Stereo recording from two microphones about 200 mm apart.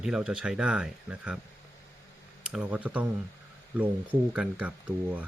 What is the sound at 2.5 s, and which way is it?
Speech, 5° right (ahead or behind).